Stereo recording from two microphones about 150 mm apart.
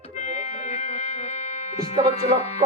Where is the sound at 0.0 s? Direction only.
50° left (ahead or behind).